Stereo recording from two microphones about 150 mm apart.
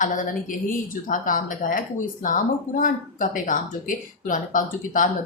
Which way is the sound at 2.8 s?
60° left (ahead or behind).